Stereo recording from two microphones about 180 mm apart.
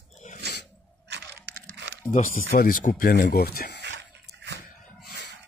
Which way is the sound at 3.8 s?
70° right (ahead or behind).